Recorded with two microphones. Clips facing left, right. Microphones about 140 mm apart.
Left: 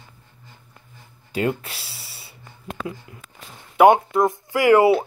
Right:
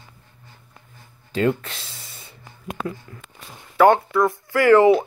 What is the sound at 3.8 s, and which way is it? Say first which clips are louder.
Speech: left 1 dB; 20° left (ahead or behind).